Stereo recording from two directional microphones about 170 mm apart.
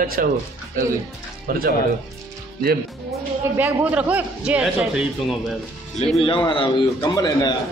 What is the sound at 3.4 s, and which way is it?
A man's voice, 10° right (ahead or behind).